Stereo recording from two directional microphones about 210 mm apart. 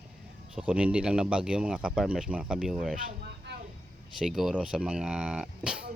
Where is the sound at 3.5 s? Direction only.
55° right (ahead or behind).